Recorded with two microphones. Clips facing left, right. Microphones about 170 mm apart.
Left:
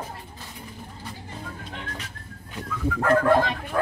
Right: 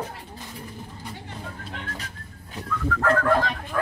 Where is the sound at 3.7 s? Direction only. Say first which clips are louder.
Even; 30° left (ahead or behind).